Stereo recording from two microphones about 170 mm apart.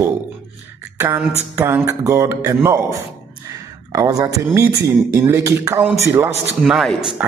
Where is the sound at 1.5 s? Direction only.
15° right (ahead or behind).